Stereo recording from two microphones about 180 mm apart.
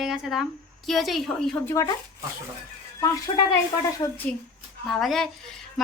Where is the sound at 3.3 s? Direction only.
30° left (ahead or behind).